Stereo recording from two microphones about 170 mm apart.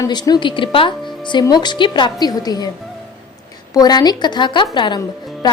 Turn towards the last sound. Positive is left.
turn(degrees=25)  # may be behind; listen again after turning